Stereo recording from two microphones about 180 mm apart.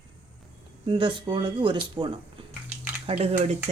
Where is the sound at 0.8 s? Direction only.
30° right (ahead or behind).